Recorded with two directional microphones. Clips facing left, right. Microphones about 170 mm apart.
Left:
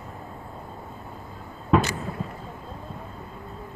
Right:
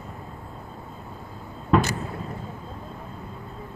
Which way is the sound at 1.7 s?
Centre (ahead or behind).